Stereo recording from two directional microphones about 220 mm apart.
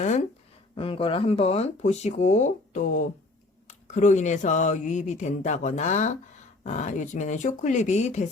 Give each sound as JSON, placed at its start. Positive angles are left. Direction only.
{"t": 0.8, "sound": "speech", "side_deg": 25}